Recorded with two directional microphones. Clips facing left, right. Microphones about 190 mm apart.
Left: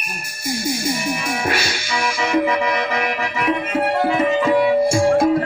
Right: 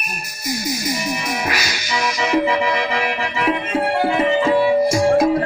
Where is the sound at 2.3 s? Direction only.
30° right (ahead or behind).